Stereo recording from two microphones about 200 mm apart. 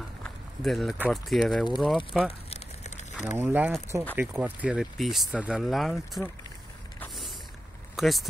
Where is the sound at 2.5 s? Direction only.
35° left (ahead or behind).